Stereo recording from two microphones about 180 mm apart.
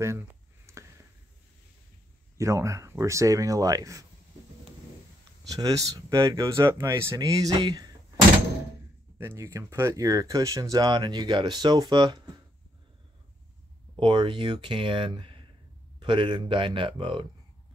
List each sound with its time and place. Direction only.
0.7 s a sound: 15° right (ahead or behind)
2.3 s speech: 15° right (ahead or behind)
5.5 s speech: 20° right (ahead or behind)
9.2 s speech: 15° right (ahead or behind)
13.9 s speech: 25° right (ahead or behind)